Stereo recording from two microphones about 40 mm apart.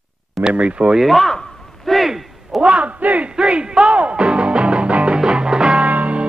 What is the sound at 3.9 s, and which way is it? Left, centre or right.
Music, right.